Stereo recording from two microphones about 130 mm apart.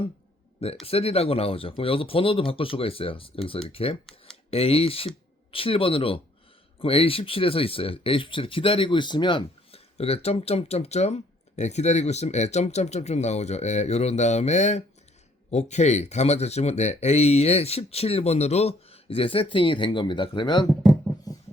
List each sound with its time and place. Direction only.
0.9 s speech: 50° left (ahead or behind)